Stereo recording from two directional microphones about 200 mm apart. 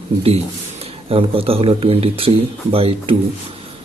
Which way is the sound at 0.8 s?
30° right (ahead or behind).